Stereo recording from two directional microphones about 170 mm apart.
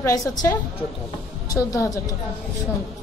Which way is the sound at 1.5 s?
20° left (ahead or behind).